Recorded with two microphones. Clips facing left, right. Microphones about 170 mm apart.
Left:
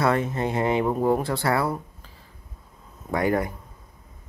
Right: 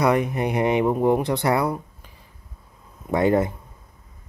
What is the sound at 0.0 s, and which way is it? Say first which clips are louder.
Speech: right 3 dB; 15° right (ahead or behind).